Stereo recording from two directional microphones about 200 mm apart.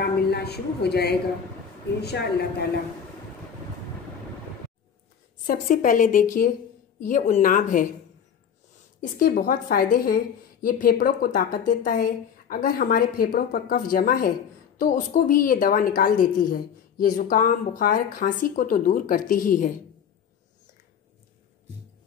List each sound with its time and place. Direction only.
0.3 s a woman's voice: 55° left (ahead or behind)
5.5 s a woman's voice: 45° left (ahead or behind)
9.0 s a woman's voice: 45° left (ahead or behind)